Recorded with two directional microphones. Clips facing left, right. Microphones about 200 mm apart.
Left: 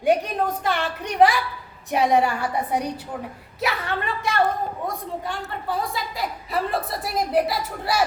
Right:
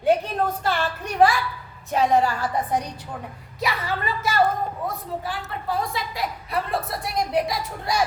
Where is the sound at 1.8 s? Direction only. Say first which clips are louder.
Even; 15° left (ahead or behind).